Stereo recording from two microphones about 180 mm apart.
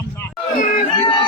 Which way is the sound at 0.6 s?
40° left (ahead or behind).